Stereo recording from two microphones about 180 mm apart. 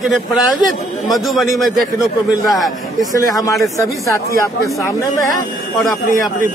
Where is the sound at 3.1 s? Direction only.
20° left (ahead or behind).